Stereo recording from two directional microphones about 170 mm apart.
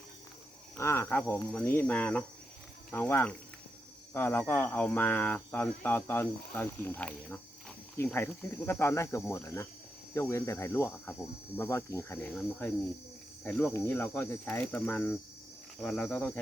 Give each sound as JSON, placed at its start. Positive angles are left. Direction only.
{"t": 0.8, "sound": "speech", "side_deg": 15}
{"t": 12.3, "sound": "speech", "side_deg": 5}